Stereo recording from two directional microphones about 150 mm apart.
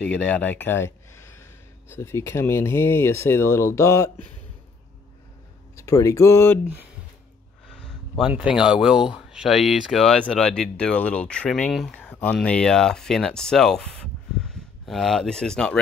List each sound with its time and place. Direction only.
0.0 s speech: 10° left (ahead or behind)
5.8 s speech: 20° left (ahead or behind)
7.6 s a sound: 5° left (ahead or behind)
8.3 s speech: 5° right (ahead or behind)